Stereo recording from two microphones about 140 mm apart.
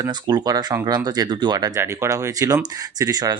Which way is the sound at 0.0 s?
30° right (ahead or behind).